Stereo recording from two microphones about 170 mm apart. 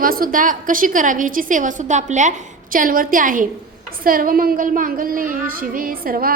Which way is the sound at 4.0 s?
55° right (ahead or behind).